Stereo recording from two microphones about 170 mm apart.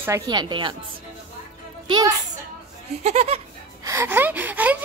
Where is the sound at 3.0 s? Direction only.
40° right (ahead or behind).